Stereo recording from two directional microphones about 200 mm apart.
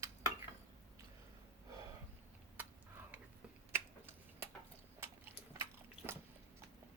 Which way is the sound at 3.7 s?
10° right (ahead or behind).